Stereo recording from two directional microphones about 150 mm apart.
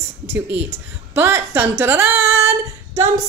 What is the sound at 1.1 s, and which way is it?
Speech, 15° right (ahead or behind).